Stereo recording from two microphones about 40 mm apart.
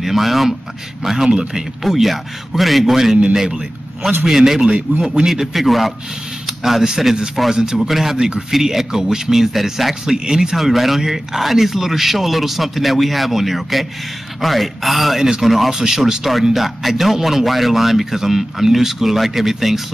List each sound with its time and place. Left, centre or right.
0.0 s a man's voice: centre
4.6 s a man's voice: right
5.0 s speech: centre
7.9 s speech: centre
8.2 s speech: centre
10.1 s speech: centre
10.5 s speech: centre